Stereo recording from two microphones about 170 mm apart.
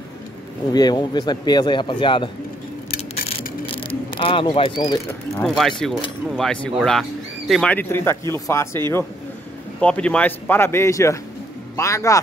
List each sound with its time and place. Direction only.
0.7 s a man's voice: 25° left (ahead or behind)
3.6 s speech: 30° left (ahead or behind)
5.6 s speech: 5° left (ahead or behind)